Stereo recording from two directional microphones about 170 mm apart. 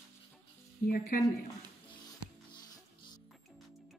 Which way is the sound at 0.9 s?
60° left (ahead or behind).